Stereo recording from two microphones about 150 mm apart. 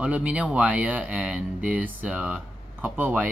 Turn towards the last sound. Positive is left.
turn(degrees=-10)  # may be behind; listen again after turning